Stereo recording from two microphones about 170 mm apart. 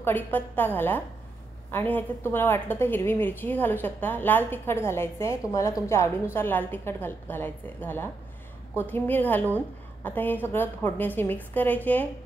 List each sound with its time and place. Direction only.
0.0 s a woman's voice: 10° left (ahead or behind)